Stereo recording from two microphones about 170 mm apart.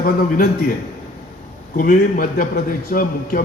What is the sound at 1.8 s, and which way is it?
A man's voice, 55° left (ahead or behind).